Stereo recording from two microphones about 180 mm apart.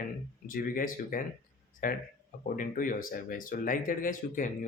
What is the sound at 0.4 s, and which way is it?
Speech, 50° left (ahead or behind).